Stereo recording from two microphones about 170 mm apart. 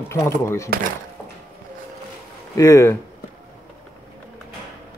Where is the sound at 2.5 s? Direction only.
20° left (ahead or behind).